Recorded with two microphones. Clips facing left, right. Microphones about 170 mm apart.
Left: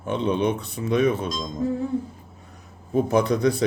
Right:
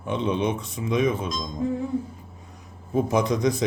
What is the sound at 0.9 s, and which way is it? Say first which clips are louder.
Speech: left 2 dB; 65° left (ahead or behind).